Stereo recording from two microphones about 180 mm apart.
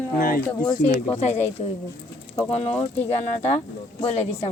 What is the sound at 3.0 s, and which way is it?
Speech, 35° left (ahead or behind).